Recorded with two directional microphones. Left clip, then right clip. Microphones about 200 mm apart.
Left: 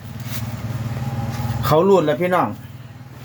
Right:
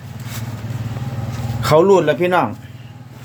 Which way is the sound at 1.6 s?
15° right (ahead or behind).